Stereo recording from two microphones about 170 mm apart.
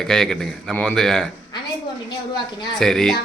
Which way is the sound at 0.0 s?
5° left (ahead or behind).